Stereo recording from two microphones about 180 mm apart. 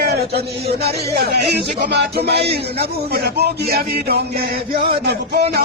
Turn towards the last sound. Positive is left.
turn(degrees=-65)  # may be behind; listen again after turning